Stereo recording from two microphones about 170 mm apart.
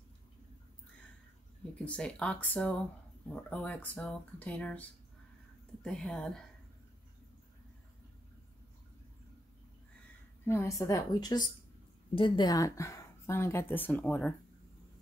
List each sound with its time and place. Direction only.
1.9 s a woman's voice: 5° left (ahead or behind)
10.4 s speech: 15° left (ahead or behind)